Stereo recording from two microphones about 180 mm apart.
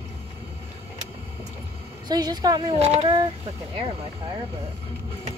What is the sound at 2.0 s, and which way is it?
Speech, 25° right (ahead or behind).